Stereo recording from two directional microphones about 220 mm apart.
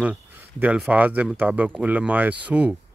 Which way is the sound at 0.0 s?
5° right (ahead or behind).